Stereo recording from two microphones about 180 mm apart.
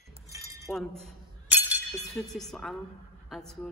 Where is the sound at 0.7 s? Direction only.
Centre (ahead or behind).